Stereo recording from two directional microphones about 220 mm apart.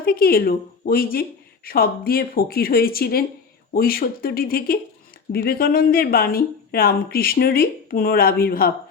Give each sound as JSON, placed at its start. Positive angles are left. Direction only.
{"t": 0.0, "sound": "a woman's voice", "side_deg": 40}